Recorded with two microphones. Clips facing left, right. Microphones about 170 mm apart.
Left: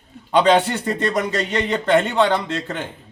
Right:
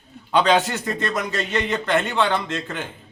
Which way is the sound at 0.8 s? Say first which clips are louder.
Left 4 dB; 30° left (ahead or behind).